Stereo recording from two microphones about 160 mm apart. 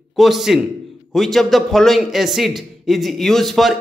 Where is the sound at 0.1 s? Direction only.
Centre (ahead or behind).